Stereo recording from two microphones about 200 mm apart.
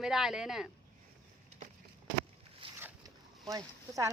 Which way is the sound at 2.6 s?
25° right (ahead or behind).